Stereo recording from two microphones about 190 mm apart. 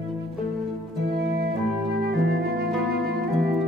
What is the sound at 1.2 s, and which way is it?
Music, 60° right (ahead or behind).